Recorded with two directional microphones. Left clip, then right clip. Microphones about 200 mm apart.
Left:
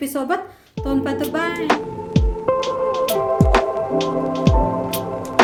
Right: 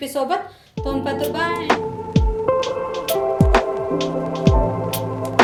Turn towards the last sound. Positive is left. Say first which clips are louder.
# even
turn(degrees=0)  # may be behind; listen again after turning